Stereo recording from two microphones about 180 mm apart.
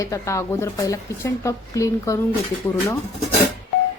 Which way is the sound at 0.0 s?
15° left (ahead or behind).